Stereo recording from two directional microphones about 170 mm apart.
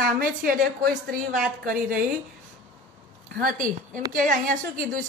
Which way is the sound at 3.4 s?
55° right (ahead or behind).